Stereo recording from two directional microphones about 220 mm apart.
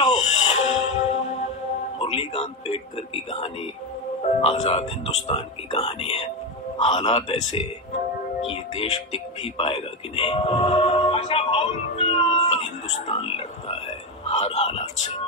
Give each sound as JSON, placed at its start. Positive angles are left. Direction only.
{"t": 0.0, "sound": "music", "side_deg": 30}
{"t": 0.6, "sound": "music", "side_deg": 65}
{"t": 2.0, "sound": "a man's voice", "side_deg": 25}
{"t": 4.4, "sound": "speech", "side_deg": 30}